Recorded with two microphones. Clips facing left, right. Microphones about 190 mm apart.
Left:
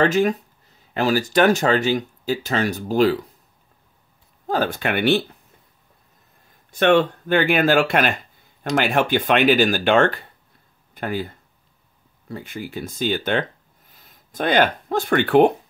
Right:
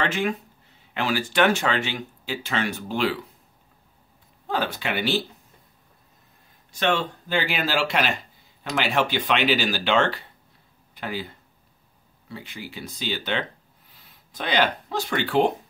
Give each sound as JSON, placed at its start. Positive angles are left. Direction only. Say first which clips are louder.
{"t": 0.0, "sound": "speech", "louder": "left 7 dB", "side_deg": 40}
{"t": 4.5, "sound": "speech", "louder": "left 5 dB", "side_deg": 45}
{"t": 6.7, "sound": "speech", "louder": "left 8 dB", "side_deg": 55}